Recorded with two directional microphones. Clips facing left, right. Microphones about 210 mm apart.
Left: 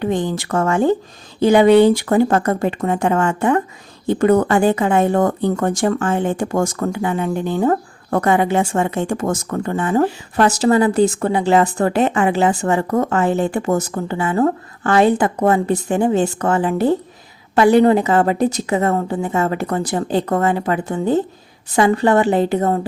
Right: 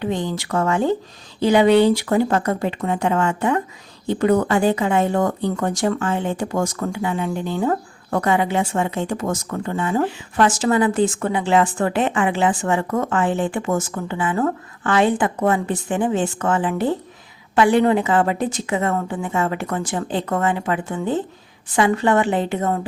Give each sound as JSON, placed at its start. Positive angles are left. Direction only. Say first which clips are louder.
{"t": 0.0, "sound": "speech", "louder": "left 4 dB", "side_deg": 50}